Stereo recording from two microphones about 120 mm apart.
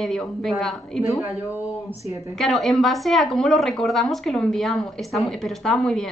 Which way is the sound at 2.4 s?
Centre (ahead or behind).